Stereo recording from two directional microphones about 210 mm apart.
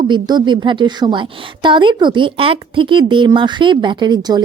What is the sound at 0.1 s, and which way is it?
A woman's voice, 20° right (ahead or behind).